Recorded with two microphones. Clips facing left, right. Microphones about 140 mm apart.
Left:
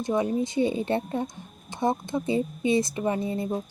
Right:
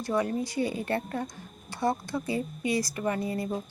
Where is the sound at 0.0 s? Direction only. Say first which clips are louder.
Left 3 dB; 20° left (ahead or behind).